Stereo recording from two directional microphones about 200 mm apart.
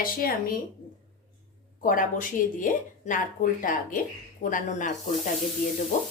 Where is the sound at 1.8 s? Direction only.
40° left (ahead or behind).